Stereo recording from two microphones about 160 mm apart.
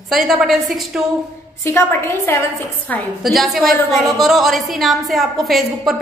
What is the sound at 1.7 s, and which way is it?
Speech, 15° left (ahead or behind).